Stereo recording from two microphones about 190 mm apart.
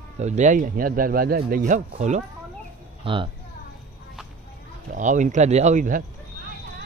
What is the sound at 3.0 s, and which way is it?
Speech, 25° right (ahead or behind).